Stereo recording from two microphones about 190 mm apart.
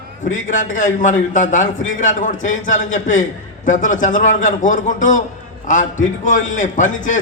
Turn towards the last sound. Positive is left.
turn(degrees=40)  # may be behind; listen again after turning